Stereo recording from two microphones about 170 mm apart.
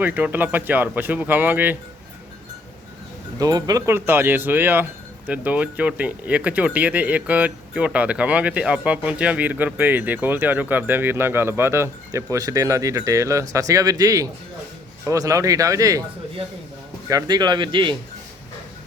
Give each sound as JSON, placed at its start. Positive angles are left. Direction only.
{"t": 0.0, "sound": "speech", "side_deg": -10}
{"t": 3.3, "sound": "speech", "side_deg": -20}
{"t": 17.1, "sound": "speech", "side_deg": -20}